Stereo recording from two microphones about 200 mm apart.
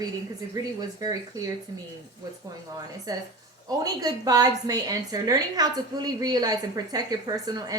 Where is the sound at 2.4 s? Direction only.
20° right (ahead or behind).